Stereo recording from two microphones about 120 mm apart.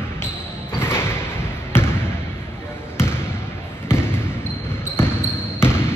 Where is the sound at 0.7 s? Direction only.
20° left (ahead or behind).